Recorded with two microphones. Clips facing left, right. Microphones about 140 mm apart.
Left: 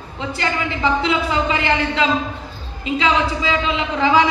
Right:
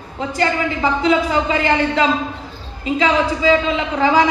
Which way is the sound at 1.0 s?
40° right (ahead or behind).